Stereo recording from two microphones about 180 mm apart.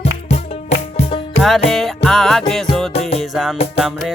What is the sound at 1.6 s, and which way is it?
Music, centre (ahead or behind).